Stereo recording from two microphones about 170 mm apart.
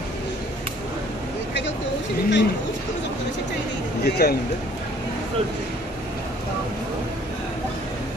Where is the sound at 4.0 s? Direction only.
65° left (ahead or behind).